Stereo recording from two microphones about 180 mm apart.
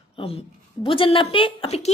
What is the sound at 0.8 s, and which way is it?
A child's voice, 30° left (ahead or behind).